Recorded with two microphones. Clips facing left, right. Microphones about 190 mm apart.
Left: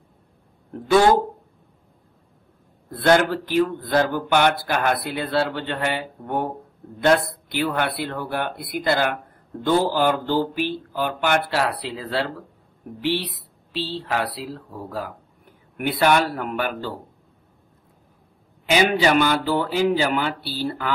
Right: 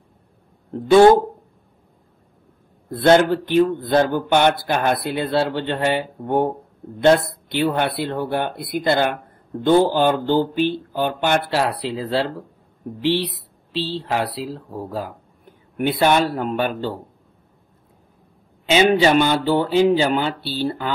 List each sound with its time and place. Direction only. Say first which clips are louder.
0.8 s speech: right 5 dB; 25° right (ahead or behind)
2.9 s speech: right 4 dB; 25° right (ahead or behind)
13.7 s speech: right 3 dB; 25° right (ahead or behind)
18.7 s speech: right 3 dB; 25° right (ahead or behind)